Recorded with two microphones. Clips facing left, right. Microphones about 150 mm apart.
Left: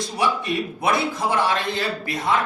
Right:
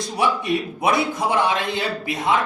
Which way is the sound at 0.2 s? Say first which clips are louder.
Right 2 dB; 20° right (ahead or behind).